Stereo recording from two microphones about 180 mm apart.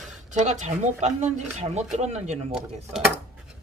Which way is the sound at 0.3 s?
40° right (ahead or behind).